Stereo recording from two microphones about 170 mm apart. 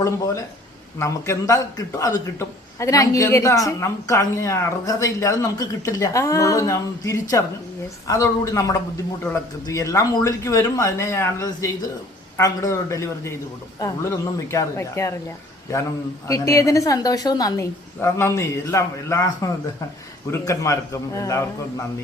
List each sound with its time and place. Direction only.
0.0 s a man's voice: 20° left (ahead or behind)